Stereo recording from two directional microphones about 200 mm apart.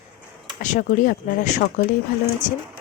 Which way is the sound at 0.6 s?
40° left (ahead or behind).